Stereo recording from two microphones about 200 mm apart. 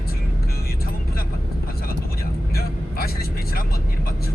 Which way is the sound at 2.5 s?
50° left (ahead or behind).